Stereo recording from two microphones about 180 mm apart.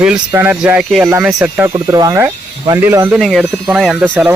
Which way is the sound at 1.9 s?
15° right (ahead or behind).